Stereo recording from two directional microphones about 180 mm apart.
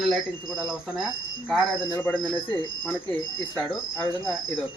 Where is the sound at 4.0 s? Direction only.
15° left (ahead or behind).